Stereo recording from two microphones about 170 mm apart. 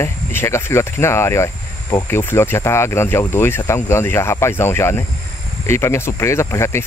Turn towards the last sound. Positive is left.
turn(degrees=15)  # may be behind; listen again after turning